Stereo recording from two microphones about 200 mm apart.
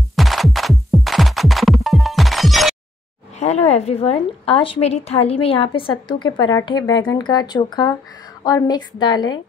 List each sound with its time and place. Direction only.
0.1 s music: centre (ahead or behind)
3.3 s a woman's voice: 30° left (ahead or behind)